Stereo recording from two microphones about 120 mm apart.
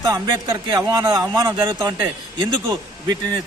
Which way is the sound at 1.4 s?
40° right (ahead or behind).